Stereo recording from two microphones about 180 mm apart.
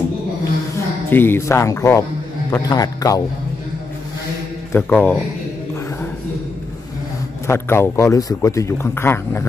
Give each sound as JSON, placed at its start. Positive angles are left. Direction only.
{"t": 1.1, "sound": "a man's voice", "side_deg": 10}
{"t": 4.7, "sound": "a man's voice", "side_deg": 10}
{"t": 7.4, "sound": "a man's voice", "side_deg": 15}